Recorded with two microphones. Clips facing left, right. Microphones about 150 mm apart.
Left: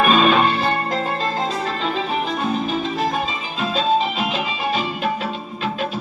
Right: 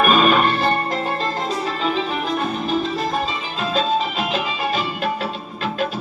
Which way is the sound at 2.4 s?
45° right (ahead or behind).